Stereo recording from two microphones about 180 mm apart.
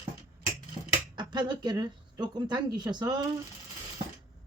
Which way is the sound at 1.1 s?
25° right (ahead or behind).